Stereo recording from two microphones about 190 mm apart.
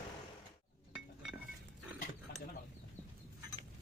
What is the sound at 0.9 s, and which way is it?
Chink, 5° right (ahead or behind).